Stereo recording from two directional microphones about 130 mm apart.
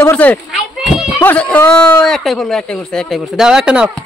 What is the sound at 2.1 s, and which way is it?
Speech, centre (ahead or behind).